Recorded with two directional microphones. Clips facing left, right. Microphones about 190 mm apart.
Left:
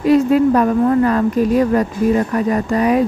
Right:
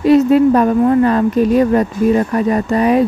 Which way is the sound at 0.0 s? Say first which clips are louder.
Right 3 dB; 25° right (ahead or behind).